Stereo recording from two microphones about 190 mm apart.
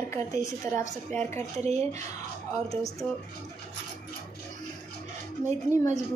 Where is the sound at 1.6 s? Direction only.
35° right (ahead or behind).